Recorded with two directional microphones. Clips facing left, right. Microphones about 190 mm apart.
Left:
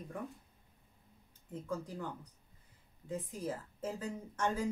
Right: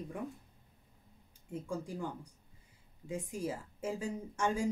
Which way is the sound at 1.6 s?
10° right (ahead or behind).